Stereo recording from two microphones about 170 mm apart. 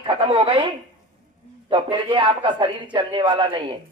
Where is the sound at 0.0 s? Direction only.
30° right (ahead or behind).